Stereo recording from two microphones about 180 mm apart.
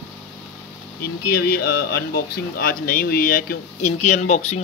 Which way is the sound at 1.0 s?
60° left (ahead or behind).